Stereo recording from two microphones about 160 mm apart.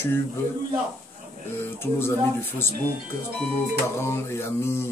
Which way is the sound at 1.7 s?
15° left (ahead or behind).